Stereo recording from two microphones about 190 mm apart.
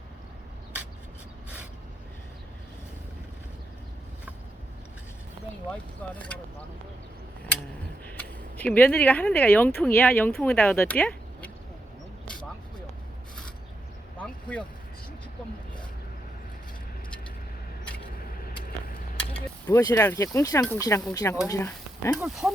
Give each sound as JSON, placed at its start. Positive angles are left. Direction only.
{"t": 5.7, "sound": "speech", "side_deg": 5}
{"t": 8.1, "sound": "speech", "side_deg": 10}
{"t": 19.6, "sound": "speech", "side_deg": 15}
{"t": 22.2, "sound": "speech", "side_deg": 0}